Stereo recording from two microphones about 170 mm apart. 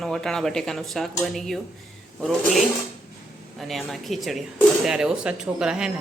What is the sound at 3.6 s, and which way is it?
Speech, centre (ahead or behind).